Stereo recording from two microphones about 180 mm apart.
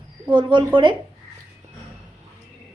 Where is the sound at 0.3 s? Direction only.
25° right (ahead or behind).